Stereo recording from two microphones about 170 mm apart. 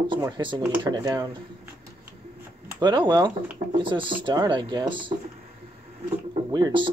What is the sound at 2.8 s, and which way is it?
Speech, 25° right (ahead or behind).